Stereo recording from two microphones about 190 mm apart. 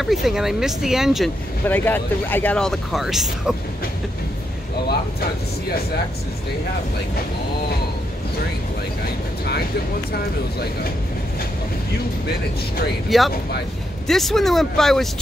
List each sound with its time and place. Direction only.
0.0 s speech: centre (ahead or behind)
1.7 s speech: 10° left (ahead or behind)
10.1 s speech: 55° left (ahead or behind)
13.1 s speech: centre (ahead or behind)